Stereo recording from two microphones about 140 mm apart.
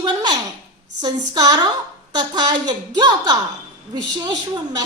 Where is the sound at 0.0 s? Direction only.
30° right (ahead or behind).